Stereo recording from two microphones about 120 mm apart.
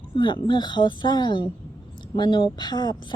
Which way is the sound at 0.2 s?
40° left (ahead or behind).